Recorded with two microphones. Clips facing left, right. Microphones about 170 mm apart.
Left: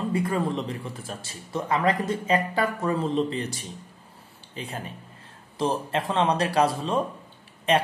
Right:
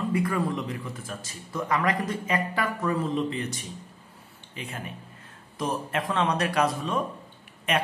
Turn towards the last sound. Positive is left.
turn(degrees=30)  # may be behind; listen again after turning